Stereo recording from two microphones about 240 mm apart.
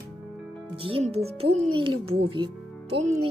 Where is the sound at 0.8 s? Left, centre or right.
Right.